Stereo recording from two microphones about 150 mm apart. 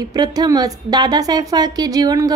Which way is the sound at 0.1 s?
25° right (ahead or behind).